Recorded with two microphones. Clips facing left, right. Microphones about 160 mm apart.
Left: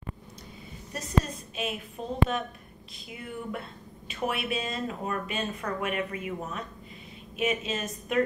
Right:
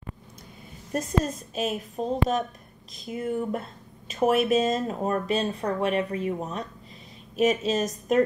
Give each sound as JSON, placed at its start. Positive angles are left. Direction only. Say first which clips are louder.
{"t": 0.9, "sound": "speech", "louder": "right 3 dB", "side_deg": -45}